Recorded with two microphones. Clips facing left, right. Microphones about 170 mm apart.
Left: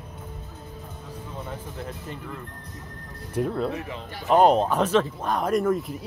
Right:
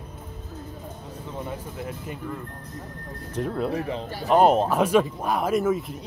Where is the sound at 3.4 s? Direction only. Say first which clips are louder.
Left 3 dB; 10° left (ahead or behind).